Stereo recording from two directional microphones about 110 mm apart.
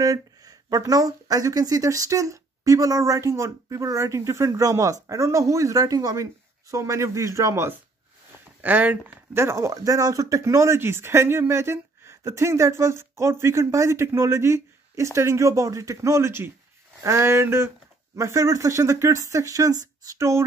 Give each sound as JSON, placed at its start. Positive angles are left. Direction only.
{"t": 0.0, "sound": "speech", "side_deg": -35}
{"t": 8.5, "sound": "speech", "side_deg": -15}